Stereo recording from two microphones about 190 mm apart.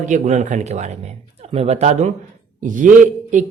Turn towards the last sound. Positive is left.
turn(degrees=-40)  # may be behind; listen again after turning